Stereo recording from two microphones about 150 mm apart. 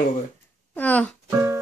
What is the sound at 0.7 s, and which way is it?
Speech, 10° left (ahead or behind).